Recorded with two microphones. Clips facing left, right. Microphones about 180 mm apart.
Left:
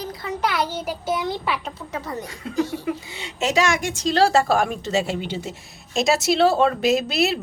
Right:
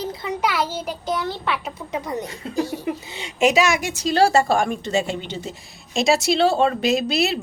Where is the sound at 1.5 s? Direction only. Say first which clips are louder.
Right 1 dB; 5° right (ahead or behind).